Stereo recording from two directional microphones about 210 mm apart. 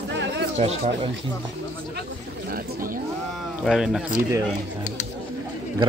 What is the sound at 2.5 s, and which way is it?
Speech, 40° right (ahead or behind).